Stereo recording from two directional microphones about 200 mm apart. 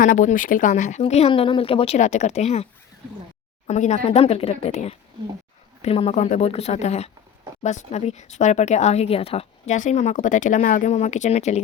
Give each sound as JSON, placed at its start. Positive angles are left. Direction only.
{"t": 0.0, "sound": "speech", "side_deg": 40}
{"t": 3.7, "sound": "speech", "side_deg": 35}